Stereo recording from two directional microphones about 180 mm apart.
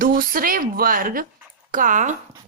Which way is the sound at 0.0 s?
50° right (ahead or behind).